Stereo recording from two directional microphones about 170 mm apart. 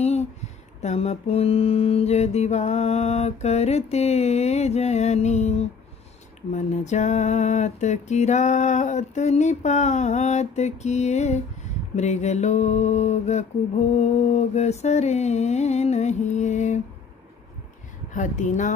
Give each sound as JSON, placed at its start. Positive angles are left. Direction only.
{"t": 0.0, "sound": "a sound", "side_deg": 40}
{"t": 0.7, "sound": "mantra", "side_deg": 40}
{"t": 18.1, "sound": "mantra", "side_deg": 45}